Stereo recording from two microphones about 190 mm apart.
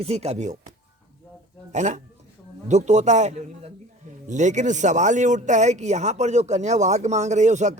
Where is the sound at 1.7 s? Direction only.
40° right (ahead or behind).